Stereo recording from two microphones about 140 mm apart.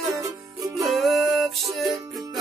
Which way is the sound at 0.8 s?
Centre (ahead or behind).